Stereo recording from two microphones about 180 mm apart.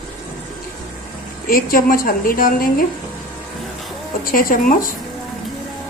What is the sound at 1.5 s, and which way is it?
A woman's voice, 50° left (ahead or behind).